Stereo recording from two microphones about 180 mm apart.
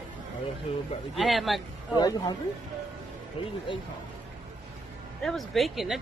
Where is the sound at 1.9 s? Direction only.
20° left (ahead or behind).